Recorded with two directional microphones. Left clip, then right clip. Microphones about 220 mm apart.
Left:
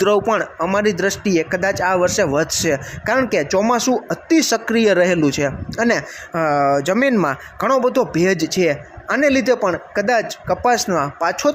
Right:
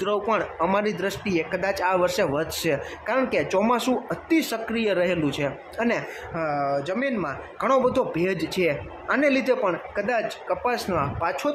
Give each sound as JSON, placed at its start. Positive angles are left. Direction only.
{"t": 0.0, "sound": "speech", "side_deg": 20}
{"t": 6.3, "sound": "speech", "side_deg": 30}
{"t": 7.6, "sound": "speech", "side_deg": 20}